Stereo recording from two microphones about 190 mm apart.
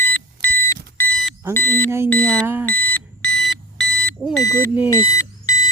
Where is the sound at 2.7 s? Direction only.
10° left (ahead or behind).